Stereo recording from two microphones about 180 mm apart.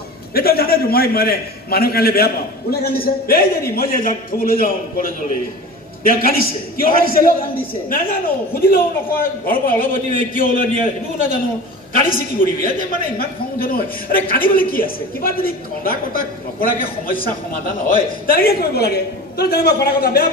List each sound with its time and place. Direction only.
0.3 s a man's voice: 60° left (ahead or behind)
12.0 s a man's voice: 50° left (ahead or behind)